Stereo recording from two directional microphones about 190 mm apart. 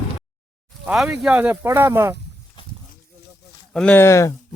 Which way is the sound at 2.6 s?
25° left (ahead or behind).